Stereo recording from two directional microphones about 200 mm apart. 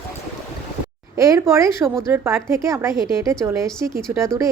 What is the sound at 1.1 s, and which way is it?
A woman's voice, 15° right (ahead or behind).